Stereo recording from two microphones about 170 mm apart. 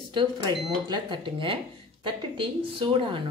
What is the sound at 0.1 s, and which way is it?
A woman's voice, 25° right (ahead or behind).